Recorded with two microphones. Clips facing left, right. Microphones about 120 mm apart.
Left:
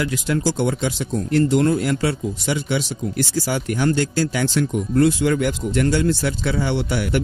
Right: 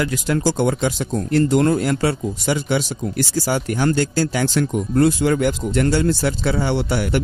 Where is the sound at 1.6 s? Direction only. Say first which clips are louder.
Right 1 dB; 55° right (ahead or behind).